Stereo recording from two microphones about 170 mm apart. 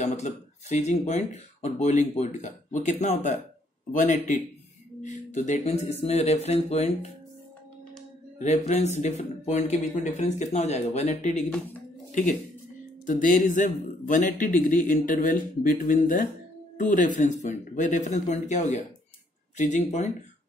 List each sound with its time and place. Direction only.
0.0 s speech: 40° left (ahead or behind)
8.4 s speech: 40° left (ahead or behind)